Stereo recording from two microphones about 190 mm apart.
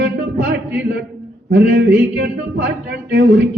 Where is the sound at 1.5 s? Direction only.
65° right (ahead or behind).